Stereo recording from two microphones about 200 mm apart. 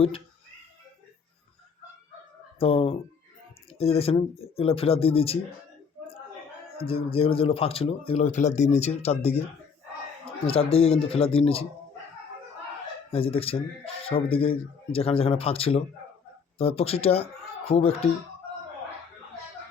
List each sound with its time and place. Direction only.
2.6 s speech: 30° left (ahead or behind)
6.8 s speech: 30° left (ahead or behind)
10.4 s speech: 30° left (ahead or behind)
13.1 s speech: 30° left (ahead or behind)